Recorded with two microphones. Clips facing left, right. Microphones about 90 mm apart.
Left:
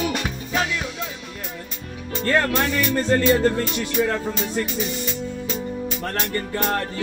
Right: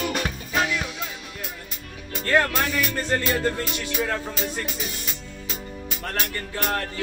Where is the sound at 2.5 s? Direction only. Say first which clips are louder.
Left 4 dB; centre (ahead or behind).